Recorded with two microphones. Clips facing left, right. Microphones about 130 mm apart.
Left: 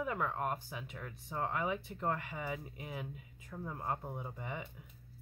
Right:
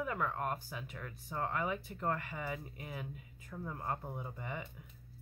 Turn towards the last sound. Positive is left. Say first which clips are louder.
# even
turn(degrees=20)  # may be behind; listen again after turning